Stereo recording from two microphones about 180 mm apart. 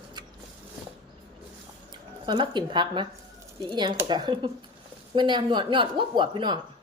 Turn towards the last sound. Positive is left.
turn(degrees=-25)  # may be behind; listen again after turning